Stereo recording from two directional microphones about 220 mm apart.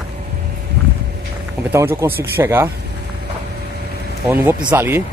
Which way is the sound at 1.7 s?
10° right (ahead or behind).